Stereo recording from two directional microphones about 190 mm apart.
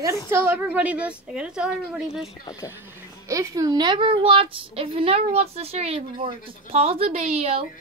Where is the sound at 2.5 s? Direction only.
15° left (ahead or behind).